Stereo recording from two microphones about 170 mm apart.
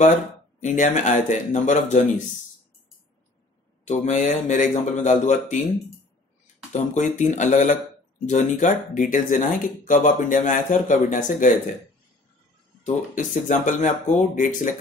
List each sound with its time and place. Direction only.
0.6 s speech: 45° left (ahead or behind)
3.8 s speech: 45° left (ahead or behind)
6.7 s speech: 45° left (ahead or behind)
12.8 s speech: 50° left (ahead or behind)